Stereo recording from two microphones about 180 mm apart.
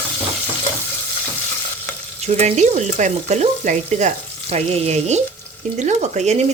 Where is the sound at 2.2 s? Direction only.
40° right (ahead or behind).